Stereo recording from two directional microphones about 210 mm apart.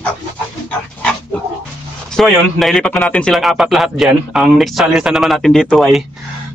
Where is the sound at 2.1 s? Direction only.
Centre (ahead or behind).